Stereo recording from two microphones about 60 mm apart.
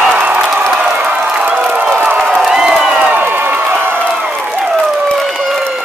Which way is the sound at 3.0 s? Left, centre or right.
Right.